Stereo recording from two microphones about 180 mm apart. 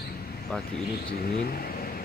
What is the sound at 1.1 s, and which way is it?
Speech, 55° left (ahead or behind).